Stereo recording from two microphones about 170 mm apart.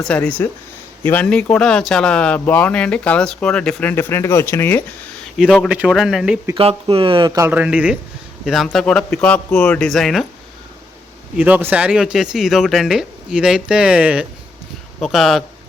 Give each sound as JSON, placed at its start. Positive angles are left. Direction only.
{"t": 0.0, "sound": "speech", "side_deg": 5}
{"t": 5.4, "sound": "speech", "side_deg": -5}
{"t": 6.6, "sound": "speech", "side_deg": -35}
{"t": 11.3, "sound": "speech", "side_deg": -10}